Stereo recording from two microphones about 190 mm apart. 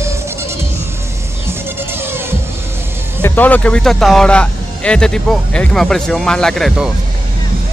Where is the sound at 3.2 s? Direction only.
10° left (ahead or behind).